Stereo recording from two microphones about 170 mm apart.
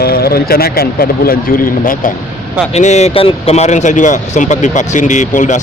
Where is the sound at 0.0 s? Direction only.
65° left (ahead or behind).